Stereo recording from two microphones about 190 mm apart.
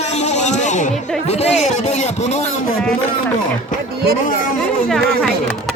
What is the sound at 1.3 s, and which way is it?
Speech, 35° left (ahead or behind).